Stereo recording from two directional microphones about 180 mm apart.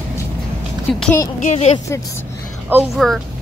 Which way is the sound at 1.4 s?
40° left (ahead or behind).